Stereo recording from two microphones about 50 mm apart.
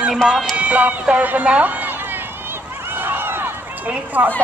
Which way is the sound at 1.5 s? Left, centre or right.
Right.